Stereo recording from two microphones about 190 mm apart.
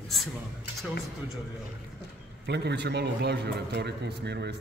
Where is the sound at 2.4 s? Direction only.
65° right (ahead or behind).